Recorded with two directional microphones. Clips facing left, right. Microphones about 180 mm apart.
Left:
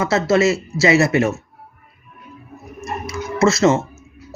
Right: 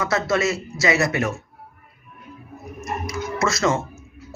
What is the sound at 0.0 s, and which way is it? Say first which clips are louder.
Speech: left 6 dB; 25° left (ahead or behind).